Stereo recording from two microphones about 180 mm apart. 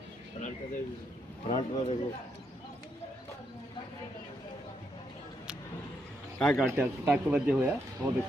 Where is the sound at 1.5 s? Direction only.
35° left (ahead or behind).